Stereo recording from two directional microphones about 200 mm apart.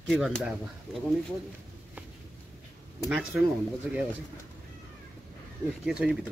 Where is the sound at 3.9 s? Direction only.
5° right (ahead or behind).